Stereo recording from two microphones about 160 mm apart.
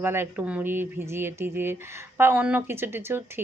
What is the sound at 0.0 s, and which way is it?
Speech, 15° right (ahead or behind).